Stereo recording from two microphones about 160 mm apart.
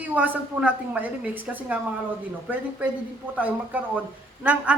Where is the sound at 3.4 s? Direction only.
10° right (ahead or behind).